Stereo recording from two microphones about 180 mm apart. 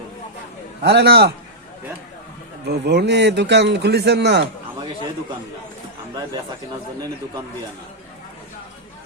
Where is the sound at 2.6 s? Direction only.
65° right (ahead or behind).